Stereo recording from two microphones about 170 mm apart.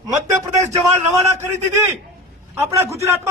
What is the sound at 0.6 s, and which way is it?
Speech, 40° right (ahead or behind).